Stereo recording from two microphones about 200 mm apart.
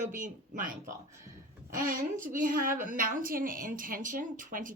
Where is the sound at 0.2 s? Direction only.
40° right (ahead or behind).